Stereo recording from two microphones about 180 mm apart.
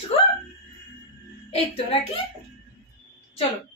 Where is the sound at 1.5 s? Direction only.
30° left (ahead or behind).